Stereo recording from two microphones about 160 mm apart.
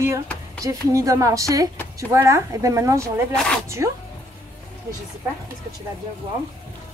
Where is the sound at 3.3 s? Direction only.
5° left (ahead or behind).